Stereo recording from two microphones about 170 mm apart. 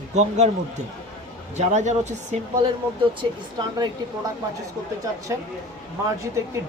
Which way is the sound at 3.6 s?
25° right (ahead or behind).